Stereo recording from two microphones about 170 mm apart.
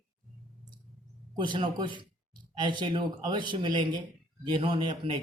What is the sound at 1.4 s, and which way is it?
Speech, 30° right (ahead or behind).